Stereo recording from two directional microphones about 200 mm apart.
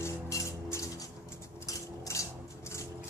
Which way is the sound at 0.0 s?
15° left (ahead or behind).